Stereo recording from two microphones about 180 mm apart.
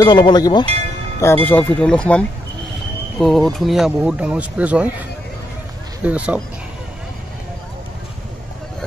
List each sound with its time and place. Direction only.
0.0 s speech: 25° left (ahead or behind)
1.2 s speech: 10° left (ahead or behind); by 4.9 s 10° right (ahead or behind)
6.0 s speech: 5° right (ahead or behind)